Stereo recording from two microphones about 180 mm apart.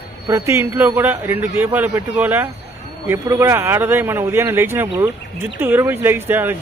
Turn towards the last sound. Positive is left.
turn(degrees=-10)  # may be behind; listen again after turning